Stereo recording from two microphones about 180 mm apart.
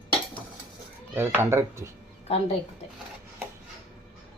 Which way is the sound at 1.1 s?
15° right (ahead or behind).